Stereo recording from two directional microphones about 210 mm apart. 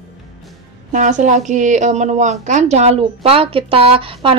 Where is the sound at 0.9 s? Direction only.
35° right (ahead or behind).